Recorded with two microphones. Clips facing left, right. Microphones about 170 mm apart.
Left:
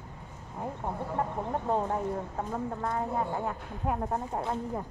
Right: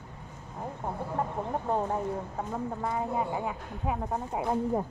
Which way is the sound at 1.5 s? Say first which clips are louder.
Even; 5° right (ahead or behind).